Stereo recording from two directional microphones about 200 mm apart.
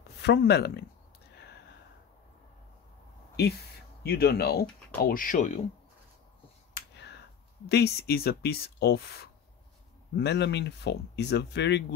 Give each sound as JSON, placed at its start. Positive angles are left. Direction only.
{"t": 0.2, "sound": "speech", "side_deg": 55}
{"t": 4.0, "sound": "speech", "side_deg": 50}
{"t": 6.7, "sound": "finger snapping", "side_deg": 55}
{"t": 7.6, "sound": "speech", "side_deg": 55}